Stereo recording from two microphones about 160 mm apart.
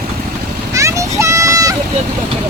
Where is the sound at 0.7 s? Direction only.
20° right (ahead or behind).